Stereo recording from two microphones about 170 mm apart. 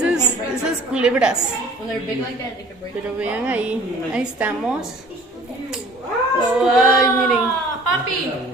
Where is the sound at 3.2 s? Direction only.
10° right (ahead or behind).